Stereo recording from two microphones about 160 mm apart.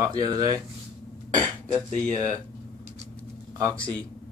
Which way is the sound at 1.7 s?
25° right (ahead or behind).